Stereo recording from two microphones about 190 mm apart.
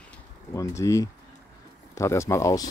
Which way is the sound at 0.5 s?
15° left (ahead or behind).